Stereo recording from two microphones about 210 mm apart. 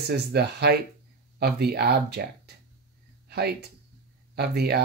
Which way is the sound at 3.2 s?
50° right (ahead or behind).